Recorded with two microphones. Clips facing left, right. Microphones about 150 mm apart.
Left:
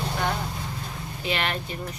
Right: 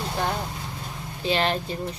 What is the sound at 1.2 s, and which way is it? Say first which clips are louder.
Speech: right 5 dB; 30° right (ahead or behind).